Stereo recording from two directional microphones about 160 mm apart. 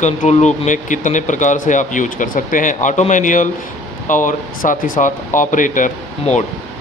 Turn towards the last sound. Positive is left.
turn(degrees=50)  # may be behind; listen again after turning